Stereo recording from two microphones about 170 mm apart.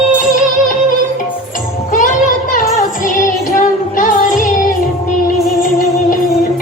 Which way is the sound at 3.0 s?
50° left (ahead or behind).